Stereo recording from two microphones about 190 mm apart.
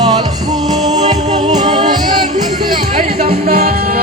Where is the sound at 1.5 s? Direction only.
20° right (ahead or behind).